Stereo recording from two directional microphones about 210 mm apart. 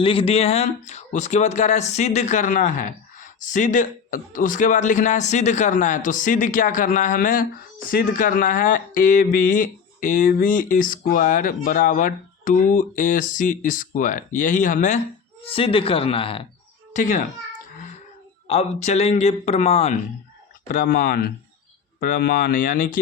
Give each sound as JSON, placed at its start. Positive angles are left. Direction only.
{"t": 0.0, "sound": "speech", "side_deg": 25}
{"t": 15.4, "sound": "speech", "side_deg": 25}
{"t": 16.9, "sound": "speech", "side_deg": 35}
{"t": 18.4, "sound": "speech", "side_deg": 30}
{"t": 20.7, "sound": "speech", "side_deg": 45}